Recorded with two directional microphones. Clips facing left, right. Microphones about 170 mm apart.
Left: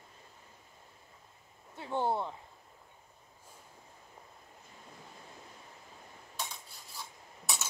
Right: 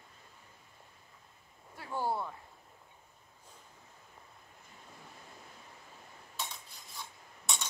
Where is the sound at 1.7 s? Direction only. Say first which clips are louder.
Left 3 dB; 25° left (ahead or behind).